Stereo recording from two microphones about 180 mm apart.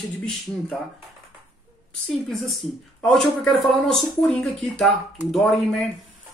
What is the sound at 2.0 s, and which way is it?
A woman's voice, centre (ahead or behind).